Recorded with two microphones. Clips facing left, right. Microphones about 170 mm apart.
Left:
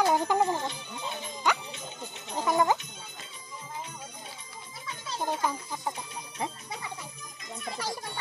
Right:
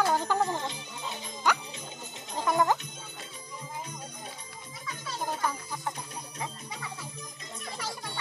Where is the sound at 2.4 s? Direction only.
Centre (ahead or behind).